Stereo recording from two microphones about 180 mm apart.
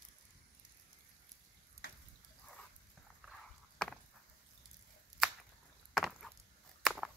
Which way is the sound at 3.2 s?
Centre (ahead or behind).